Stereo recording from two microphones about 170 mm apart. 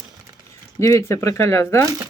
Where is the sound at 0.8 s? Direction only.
15° left (ahead or behind).